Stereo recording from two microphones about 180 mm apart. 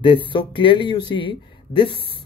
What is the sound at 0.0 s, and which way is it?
Speech, 30° left (ahead or behind).